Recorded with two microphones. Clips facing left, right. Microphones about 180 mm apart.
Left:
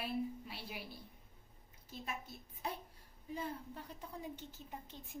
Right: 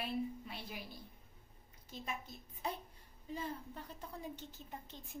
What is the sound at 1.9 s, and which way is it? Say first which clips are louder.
A woman's voice: right 1 dB; 5° left (ahead or behind).